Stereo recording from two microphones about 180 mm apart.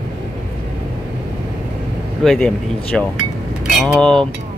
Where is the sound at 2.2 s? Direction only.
5° left (ahead or behind).